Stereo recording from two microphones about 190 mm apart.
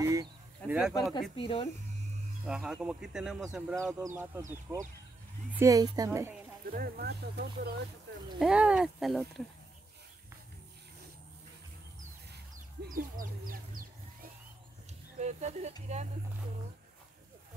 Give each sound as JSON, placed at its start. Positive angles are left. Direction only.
{"t": 0.0, "sound": "a sound", "side_deg": -15}
{"t": 0.9, "sound": "speech", "side_deg": 20}
{"t": 2.4, "sound": "speech", "side_deg": -5}
{"t": 4.0, "sound": "speech", "side_deg": -15}
{"t": 6.7, "sound": "speech", "side_deg": -55}
{"t": 8.4, "sound": "speech", "side_deg": -5}
{"t": 12.9, "sound": "speech", "side_deg": -45}
{"t": 15.1, "sound": "speech", "side_deg": -35}